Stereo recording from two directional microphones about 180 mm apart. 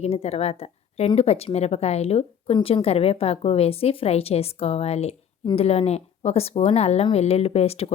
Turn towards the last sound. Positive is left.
turn(degrees=35)  # may be behind; listen again after turning